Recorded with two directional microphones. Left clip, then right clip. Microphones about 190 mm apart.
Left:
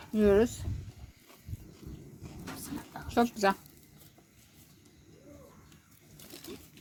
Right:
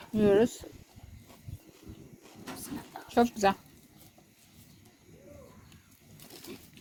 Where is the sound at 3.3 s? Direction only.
Centre (ahead or behind).